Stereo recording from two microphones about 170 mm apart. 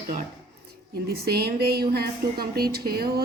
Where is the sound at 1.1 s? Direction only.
65° right (ahead or behind).